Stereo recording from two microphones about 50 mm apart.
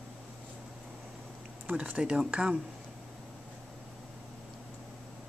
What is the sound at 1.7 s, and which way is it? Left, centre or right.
Speech, right.